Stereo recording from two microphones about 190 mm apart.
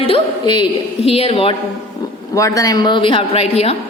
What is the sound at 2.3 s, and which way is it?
Speech, 15° left (ahead or behind).